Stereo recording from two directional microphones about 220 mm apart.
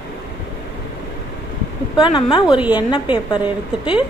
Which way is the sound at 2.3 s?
25° left (ahead or behind).